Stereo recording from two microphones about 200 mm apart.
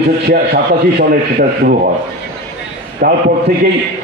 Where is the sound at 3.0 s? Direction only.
45° right (ahead or behind).